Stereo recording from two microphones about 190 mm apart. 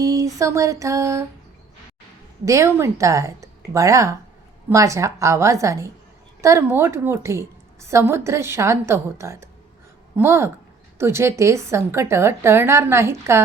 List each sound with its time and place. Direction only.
0.0 s a sound: 15° right (ahead or behind)
0.3 s a woman's voice: 15° right (ahead or behind)
2.4 s a woman's voice: 15° right (ahead or behind)